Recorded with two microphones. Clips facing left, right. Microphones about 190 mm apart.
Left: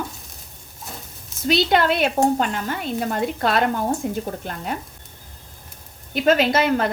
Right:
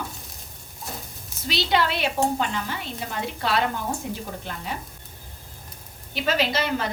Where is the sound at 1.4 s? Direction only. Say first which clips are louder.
Left 6 dB; 50° left (ahead or behind).